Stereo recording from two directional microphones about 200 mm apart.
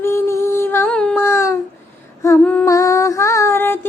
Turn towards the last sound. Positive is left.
turn(degrees=15)  # may be behind; listen again after turning